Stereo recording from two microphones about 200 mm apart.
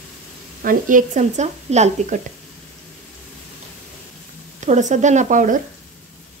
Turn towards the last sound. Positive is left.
turn(degrees=-40)  # may be behind; listen again after turning